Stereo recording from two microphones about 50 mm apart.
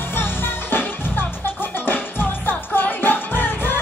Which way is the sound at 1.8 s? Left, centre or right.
Left.